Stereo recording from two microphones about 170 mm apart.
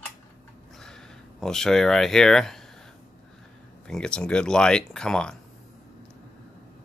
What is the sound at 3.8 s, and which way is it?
Speech, 5° left (ahead or behind).